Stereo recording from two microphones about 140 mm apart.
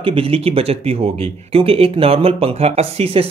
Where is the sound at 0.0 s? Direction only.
40° right (ahead or behind).